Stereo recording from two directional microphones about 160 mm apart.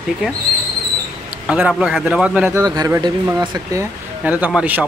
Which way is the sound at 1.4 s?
10° right (ahead or behind).